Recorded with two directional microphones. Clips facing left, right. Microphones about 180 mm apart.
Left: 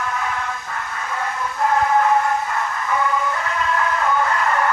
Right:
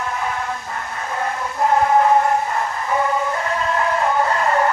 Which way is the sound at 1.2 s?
25° right (ahead or behind).